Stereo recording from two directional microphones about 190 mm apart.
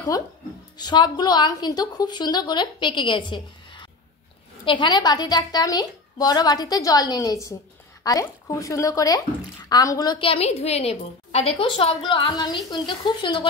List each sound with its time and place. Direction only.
0.7 s a woman's voice: 20° left (ahead or behind)